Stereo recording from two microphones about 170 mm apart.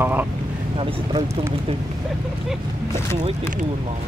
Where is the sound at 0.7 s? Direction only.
30° right (ahead or behind).